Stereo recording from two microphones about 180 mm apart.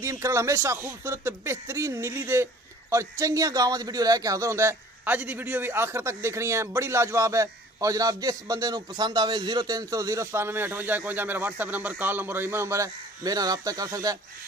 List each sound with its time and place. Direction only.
0.0 s speech: 15° right (ahead or behind)